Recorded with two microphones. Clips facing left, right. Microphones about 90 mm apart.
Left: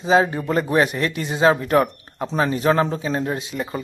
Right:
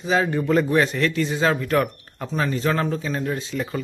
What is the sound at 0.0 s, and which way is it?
Speech, 20° left (ahead or behind).